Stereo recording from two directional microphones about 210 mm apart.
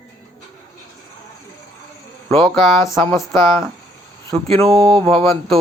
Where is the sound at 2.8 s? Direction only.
15° left (ahead or behind).